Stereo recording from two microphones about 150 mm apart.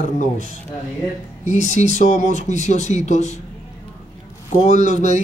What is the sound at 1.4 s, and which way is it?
Speech, 55° left (ahead or behind).